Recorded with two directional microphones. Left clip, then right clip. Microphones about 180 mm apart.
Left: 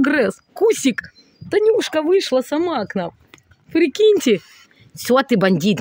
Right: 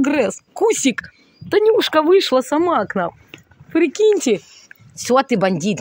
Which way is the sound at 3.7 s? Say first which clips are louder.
Left 1 dB; 35° left (ahead or behind).